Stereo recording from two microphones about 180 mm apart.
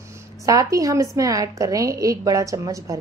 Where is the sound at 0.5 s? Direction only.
20° right (ahead or behind).